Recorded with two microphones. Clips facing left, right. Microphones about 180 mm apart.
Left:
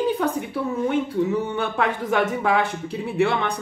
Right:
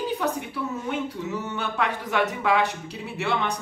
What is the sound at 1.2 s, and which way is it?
Speech, 55° left (ahead or behind).